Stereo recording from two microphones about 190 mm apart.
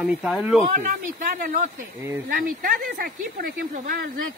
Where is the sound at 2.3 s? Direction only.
50° right (ahead or behind).